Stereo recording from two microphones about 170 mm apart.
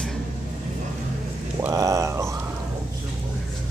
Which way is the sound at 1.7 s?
20° right (ahead or behind).